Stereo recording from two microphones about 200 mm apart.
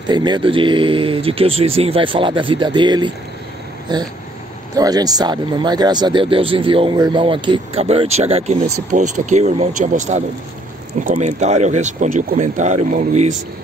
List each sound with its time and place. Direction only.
0.0 s speech: 20° right (ahead or behind)